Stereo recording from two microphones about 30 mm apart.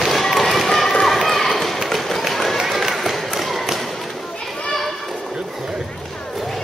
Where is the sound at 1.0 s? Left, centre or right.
Centre.